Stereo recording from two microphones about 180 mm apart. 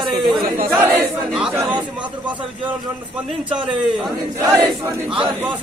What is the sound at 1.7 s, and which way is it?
A man's voice, 25° right (ahead or behind).